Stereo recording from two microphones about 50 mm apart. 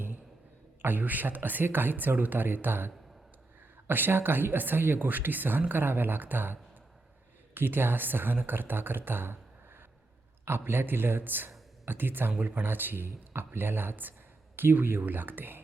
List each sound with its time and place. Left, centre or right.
0.8 s speech: right
10.6 s speech: right